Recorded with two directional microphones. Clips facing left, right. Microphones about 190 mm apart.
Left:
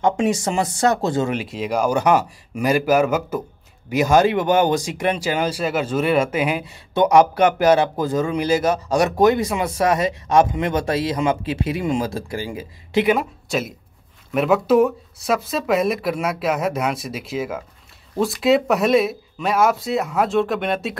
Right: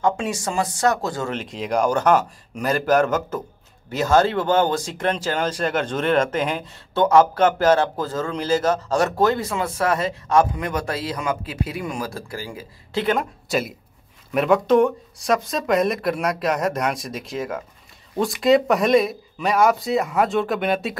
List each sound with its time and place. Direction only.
0.0 s speech: 20° left (ahead or behind)
1.3 s speech: 5° left (ahead or behind)